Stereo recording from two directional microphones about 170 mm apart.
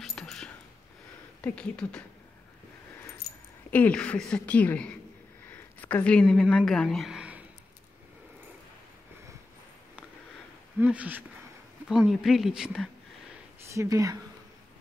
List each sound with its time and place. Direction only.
0.0 s a sound: 5° left (ahead or behind)
1.4 s speech: 5° left (ahead or behind)
3.7 s a woman's voice: 10° left (ahead or behind); by 7.4 s 5° right (ahead or behind)
10.8 s speech: 10° right (ahead or behind)
13.7 s speech: 20° right (ahead or behind)